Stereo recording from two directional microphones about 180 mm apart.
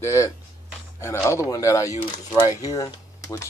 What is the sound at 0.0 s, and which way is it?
Speech, 15° left (ahead or behind).